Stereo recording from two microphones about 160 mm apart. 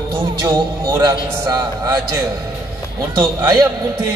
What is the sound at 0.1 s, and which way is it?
A man's voice, 15° right (ahead or behind).